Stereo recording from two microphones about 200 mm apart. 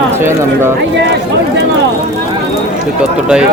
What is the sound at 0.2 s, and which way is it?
Speech, 10° right (ahead or behind).